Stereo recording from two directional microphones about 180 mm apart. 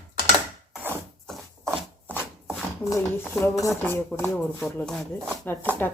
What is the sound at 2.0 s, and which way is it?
Chopping, 10° right (ahead or behind).